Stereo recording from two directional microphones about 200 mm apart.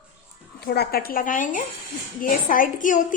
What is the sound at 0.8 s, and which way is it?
A woman's voice, 50° left (ahead or behind).